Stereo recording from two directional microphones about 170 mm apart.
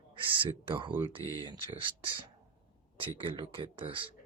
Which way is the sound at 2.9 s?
30° right (ahead or behind).